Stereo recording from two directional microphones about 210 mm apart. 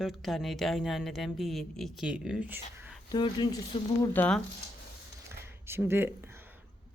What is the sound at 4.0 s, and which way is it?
Speech, 5° left (ahead or behind).